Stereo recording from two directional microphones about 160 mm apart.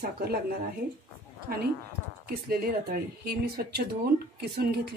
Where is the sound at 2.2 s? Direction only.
70° right (ahead or behind).